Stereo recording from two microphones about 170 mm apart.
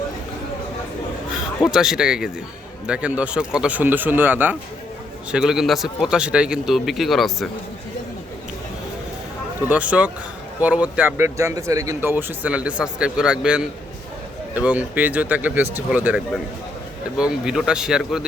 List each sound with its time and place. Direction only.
1.6 s a man's voice: 5° right (ahead or behind)
9.6 s a man's voice: 10° right (ahead or behind)